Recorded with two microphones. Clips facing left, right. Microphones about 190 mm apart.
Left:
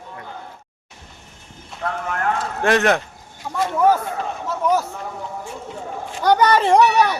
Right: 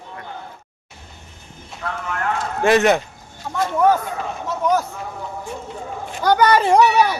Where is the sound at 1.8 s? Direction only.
40° left (ahead or behind).